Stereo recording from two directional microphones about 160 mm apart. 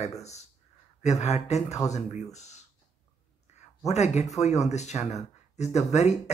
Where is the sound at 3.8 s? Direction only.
45° left (ahead or behind).